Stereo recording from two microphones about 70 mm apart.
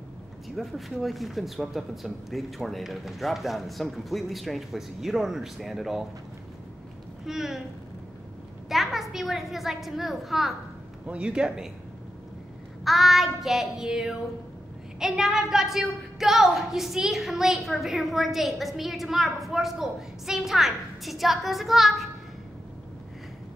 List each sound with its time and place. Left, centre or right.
0.6 s a woman's voice: centre
7.2 s a woman's voice: centre
8.6 s a woman's voice: centre
11.1 s a man's voice: centre
12.8 s a woman's voice: centre